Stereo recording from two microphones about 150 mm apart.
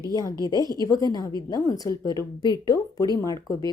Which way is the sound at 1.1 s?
25° left (ahead or behind).